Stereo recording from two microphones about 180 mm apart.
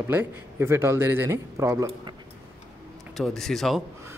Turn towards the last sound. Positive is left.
turn(degrees=0)  # may be behind; listen again after turning